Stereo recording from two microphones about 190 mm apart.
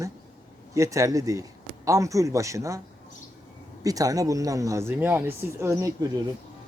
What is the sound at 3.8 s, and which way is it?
Speech, 20° right (ahead or behind).